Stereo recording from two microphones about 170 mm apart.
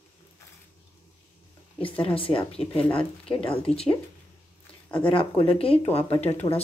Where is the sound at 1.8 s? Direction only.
30° left (ahead or behind).